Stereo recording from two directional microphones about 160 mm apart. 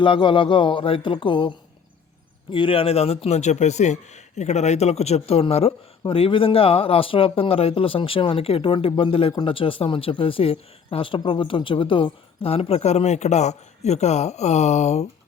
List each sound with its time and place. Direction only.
0.0 s speech: 30° left (ahead or behind)